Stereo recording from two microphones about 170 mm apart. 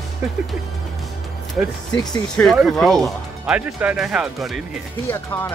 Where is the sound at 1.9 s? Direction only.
25° left (ahead or behind).